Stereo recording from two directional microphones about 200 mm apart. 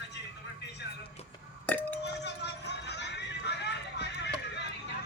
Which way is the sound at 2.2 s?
60° left (ahead or behind).